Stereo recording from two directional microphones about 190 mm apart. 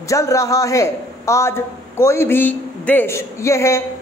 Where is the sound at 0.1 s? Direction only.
15° left (ahead or behind).